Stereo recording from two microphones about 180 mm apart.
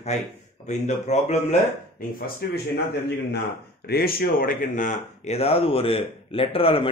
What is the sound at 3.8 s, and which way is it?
Speech, 60° left (ahead or behind).